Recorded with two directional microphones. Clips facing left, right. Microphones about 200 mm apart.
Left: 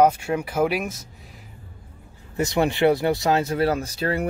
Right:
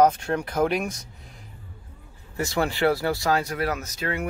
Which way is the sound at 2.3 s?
20° left (ahead or behind).